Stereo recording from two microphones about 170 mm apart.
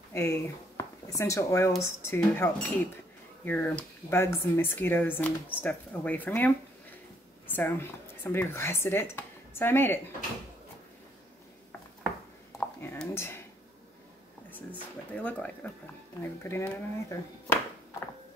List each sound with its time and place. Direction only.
0.1 s speech: 15° left (ahead or behind)
12.5 s a sound: 15° left (ahead or behind)
14.5 s speech: 10° left (ahead or behind)